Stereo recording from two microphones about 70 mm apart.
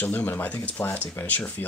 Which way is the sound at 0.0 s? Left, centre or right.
Left.